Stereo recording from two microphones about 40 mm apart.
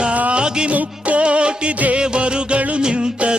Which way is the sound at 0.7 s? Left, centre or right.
Right.